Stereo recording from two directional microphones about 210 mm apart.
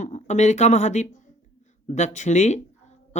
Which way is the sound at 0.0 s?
35° left (ahead or behind).